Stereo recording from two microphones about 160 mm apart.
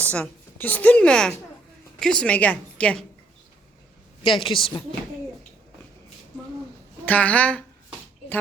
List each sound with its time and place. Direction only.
0.0 s a woman's voice: 10° left (ahead or behind)
4.2 s a woman's voice: 30° left (ahead or behind)
7.0 s a woman's voice: 10° left (ahead or behind)